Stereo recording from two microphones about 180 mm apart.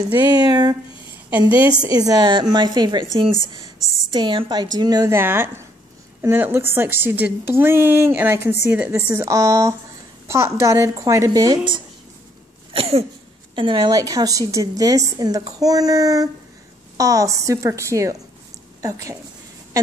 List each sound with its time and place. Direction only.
0.1 s a woman's voice: 25° right (ahead or behind)
1.5 s a woman's voice: 30° left (ahead or behind)
1.9 s a woman's voice: 20° right (ahead or behind)
4.1 s a woman's voice: 25° right (ahead or behind)
12.7 s a sound: 35° right (ahead or behind)
13.6 s a woman's voice: 25° right (ahead or behind)